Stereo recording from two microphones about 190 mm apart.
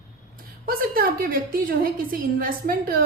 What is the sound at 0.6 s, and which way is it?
A woman's voice, 50° right (ahead or behind).